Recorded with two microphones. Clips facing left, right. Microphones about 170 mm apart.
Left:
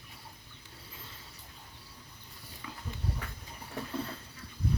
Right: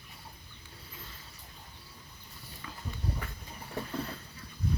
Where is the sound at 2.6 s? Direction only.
15° left (ahead or behind).